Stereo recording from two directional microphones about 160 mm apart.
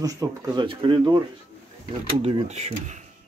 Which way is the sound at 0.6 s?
30° right (ahead or behind).